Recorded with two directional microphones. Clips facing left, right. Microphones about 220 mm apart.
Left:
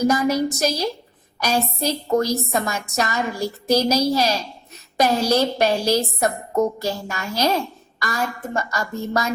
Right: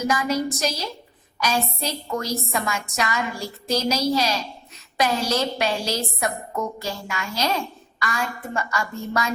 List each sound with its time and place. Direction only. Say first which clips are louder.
0.1 s a woman's voice: left 4 dB; 40° left (ahead or behind)